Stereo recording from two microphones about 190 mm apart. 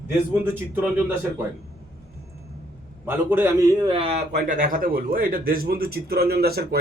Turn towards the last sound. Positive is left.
turn(degrees=-55)  # may be behind; listen again after turning